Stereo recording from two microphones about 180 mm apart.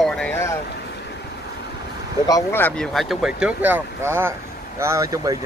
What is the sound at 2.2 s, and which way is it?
Speech, 15° left (ahead or behind).